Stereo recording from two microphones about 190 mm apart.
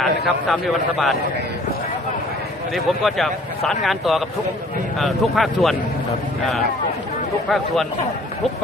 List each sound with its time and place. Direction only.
0.0 s a man's voice: centre (ahead or behind)
2.7 s a man's voice: centre (ahead or behind)